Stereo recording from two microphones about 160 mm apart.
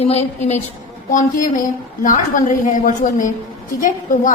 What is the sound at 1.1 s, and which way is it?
A woman's voice, 55° left (ahead or behind).